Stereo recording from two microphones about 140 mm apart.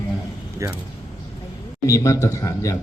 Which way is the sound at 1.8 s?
25° left (ahead or behind).